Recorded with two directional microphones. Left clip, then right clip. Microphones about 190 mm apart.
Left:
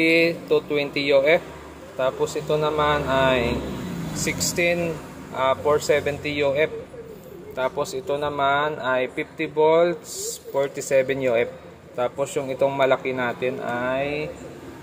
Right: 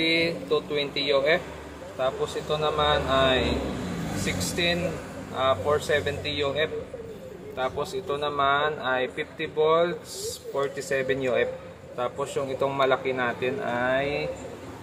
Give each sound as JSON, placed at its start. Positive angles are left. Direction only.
{"t": 0.0, "sound": "speech", "side_deg": 25}